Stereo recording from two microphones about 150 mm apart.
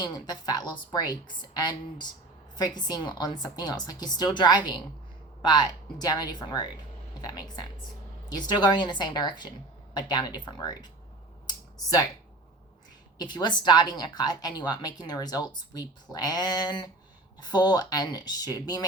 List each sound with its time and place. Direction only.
0.0 s a woman's voice: 25° left (ahead or behind)
11.4 s a sound: 25° left (ahead or behind)
13.1 s a woman's voice: 30° left (ahead or behind)